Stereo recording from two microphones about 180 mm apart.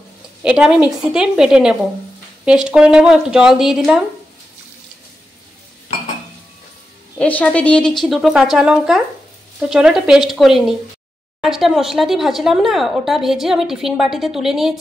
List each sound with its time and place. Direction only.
0.4 s a woman's voice: 5° right (ahead or behind)
7.2 s speech: 10° left (ahead or behind)